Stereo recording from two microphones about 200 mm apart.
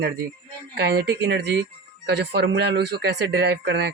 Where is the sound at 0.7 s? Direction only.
55° right (ahead or behind).